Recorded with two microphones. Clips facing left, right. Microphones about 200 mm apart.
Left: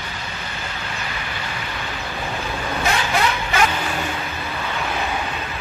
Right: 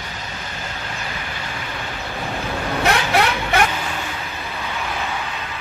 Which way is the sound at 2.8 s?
65° right (ahead or behind).